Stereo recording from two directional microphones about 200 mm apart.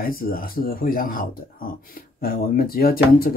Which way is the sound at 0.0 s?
45° left (ahead or behind).